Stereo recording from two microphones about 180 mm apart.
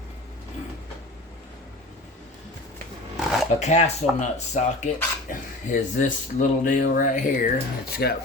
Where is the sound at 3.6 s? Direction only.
40° left (ahead or behind).